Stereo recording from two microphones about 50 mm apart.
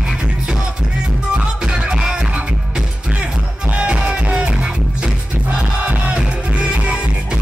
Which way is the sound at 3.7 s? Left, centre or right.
Right.